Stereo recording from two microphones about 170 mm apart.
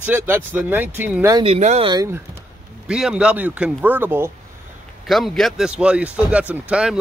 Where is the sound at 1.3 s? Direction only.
35° right (ahead or behind).